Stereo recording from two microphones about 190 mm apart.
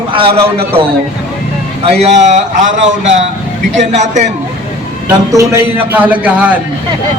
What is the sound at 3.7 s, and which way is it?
Speech, 40° right (ahead or behind).